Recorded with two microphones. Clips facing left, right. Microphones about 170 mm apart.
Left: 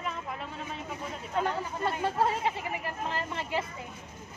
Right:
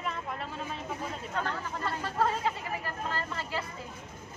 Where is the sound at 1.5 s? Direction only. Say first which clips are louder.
Left 3 dB; 25° left (ahead or behind).